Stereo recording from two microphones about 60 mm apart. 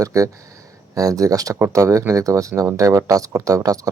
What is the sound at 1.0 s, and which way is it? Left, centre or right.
Speech, right.